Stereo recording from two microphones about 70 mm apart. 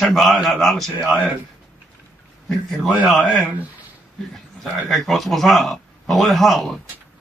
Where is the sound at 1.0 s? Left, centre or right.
Centre.